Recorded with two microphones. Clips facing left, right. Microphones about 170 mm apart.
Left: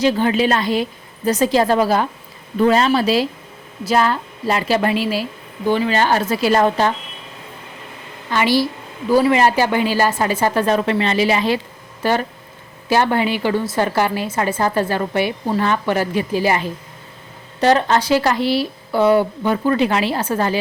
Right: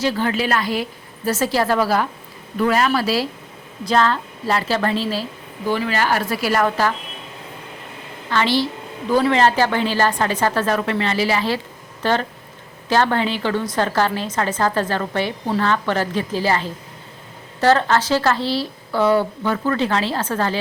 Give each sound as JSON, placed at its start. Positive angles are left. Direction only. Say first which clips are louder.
{"t": 0.0, "sound": "a woman's voice", "louder": "left 4 dB", "side_deg": 20}
{"t": 8.3, "sound": "a woman's voice", "louder": "left 2 dB", "side_deg": 10}